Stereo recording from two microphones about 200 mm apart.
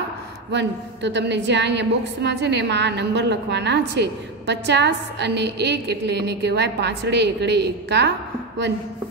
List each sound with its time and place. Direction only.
0.5 s a woman's voice: 60° right (ahead or behind)